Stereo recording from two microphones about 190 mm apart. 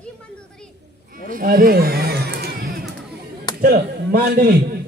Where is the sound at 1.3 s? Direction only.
50° right (ahead or behind).